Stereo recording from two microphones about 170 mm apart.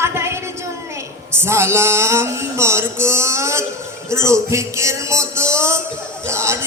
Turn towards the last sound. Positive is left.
turn(degrees=-15)  # may be behind; listen again after turning